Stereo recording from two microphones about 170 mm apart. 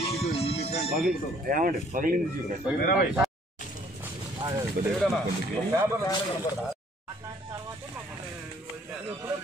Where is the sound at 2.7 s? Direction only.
5° right (ahead or behind).